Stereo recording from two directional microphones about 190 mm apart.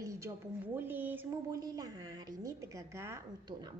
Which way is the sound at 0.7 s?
10° right (ahead or behind).